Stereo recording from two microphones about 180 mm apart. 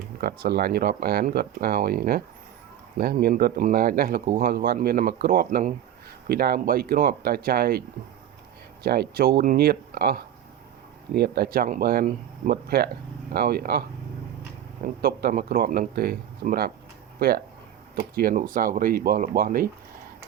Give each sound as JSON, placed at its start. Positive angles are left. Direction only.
{"t": 0.2, "sound": "speech", "side_deg": -60}